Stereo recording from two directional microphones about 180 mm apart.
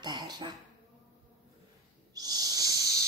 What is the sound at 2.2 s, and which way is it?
Owl, 20° right (ahead or behind).